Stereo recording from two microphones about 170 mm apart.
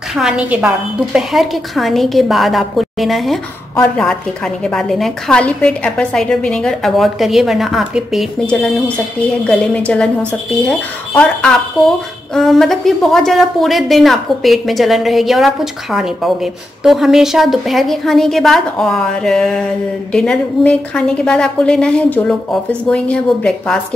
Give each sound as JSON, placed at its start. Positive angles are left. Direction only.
{"t": 0.2, "sound": "a woman's voice", "side_deg": -5}